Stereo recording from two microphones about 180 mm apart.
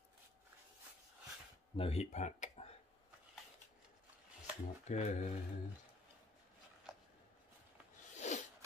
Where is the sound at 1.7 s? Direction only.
35° left (ahead or behind).